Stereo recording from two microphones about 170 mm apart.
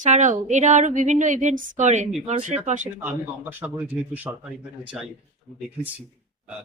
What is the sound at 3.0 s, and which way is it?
A man's voice, 10° right (ahead or behind).